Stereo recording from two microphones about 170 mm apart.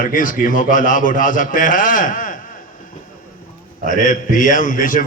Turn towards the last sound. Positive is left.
turn(degrees=55)  # may be behind; listen again after turning